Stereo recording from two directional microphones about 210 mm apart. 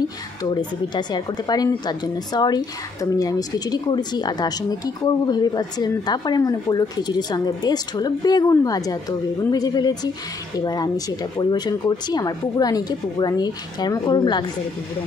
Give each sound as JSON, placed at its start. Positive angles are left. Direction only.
{"t": 0.4, "sound": "speech", "side_deg": 20}